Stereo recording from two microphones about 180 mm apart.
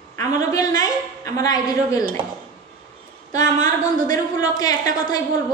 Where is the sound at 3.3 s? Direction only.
20° left (ahead or behind).